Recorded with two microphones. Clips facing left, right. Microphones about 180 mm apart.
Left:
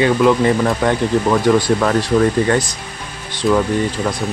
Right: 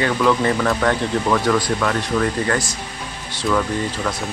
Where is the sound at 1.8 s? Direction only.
35° left (ahead or behind).